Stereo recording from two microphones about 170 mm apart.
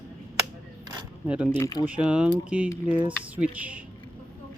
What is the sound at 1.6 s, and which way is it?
Speech, 20° left (ahead or behind).